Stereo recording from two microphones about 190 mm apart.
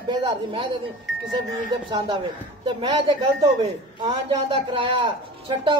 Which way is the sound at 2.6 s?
25° right (ahead or behind).